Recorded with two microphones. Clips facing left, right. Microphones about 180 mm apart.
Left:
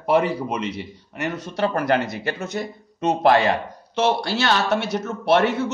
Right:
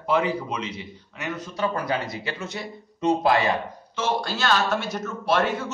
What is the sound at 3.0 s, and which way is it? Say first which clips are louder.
A man's voice: left 3 dB; 70° left (ahead or behind).